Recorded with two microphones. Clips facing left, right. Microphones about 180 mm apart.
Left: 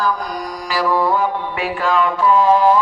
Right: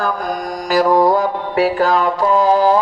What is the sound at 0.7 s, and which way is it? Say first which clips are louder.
Music: right 5 dB; 45° right (ahead or behind).